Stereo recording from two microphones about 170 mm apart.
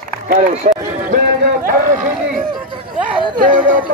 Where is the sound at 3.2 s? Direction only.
25° right (ahead or behind).